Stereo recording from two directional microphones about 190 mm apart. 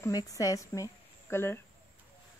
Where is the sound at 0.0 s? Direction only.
20° left (ahead or behind).